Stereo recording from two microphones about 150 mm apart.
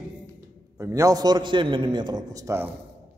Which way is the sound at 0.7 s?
20° right (ahead or behind).